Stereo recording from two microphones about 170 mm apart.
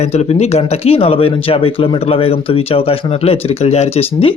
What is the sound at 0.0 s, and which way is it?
Speech, 40° left (ahead or behind).